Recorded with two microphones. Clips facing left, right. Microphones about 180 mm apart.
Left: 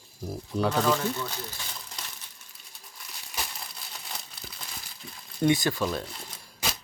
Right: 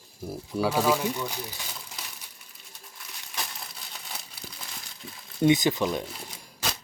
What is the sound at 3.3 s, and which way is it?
Crumpling, centre (ahead or behind).